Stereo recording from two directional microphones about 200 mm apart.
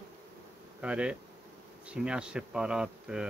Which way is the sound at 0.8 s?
5° right (ahead or behind).